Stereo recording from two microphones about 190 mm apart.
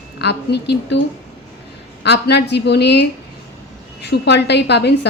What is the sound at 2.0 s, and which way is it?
A woman's voice, 60° left (ahead or behind).